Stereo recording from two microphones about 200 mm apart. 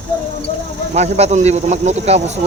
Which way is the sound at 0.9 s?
35° right (ahead or behind).